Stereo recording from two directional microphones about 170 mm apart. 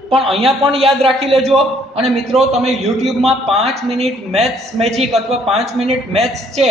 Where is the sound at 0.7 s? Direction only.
35° right (ahead or behind).